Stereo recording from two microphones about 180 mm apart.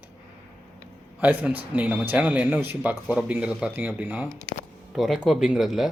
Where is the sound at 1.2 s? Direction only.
10° right (ahead or behind).